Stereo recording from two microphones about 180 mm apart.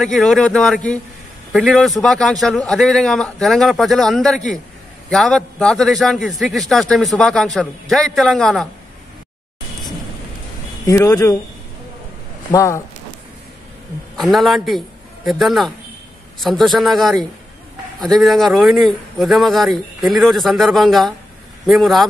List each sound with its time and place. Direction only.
0.0 s a man's voice: centre (ahead or behind)
10.9 s speech: 15° left (ahead or behind)
12.4 s speech: 15° left (ahead or behind)
14.1 s a man's voice: centre (ahead or behind)